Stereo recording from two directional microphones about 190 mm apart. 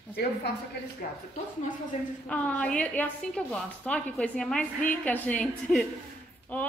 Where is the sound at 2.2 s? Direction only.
5° left (ahead or behind).